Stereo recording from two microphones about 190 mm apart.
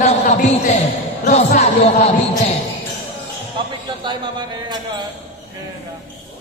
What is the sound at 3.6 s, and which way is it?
Speech, 25° right (ahead or behind).